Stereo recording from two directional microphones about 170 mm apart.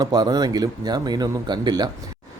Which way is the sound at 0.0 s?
25° right (ahead or behind).